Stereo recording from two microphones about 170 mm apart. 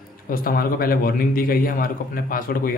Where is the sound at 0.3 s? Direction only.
60° left (ahead or behind).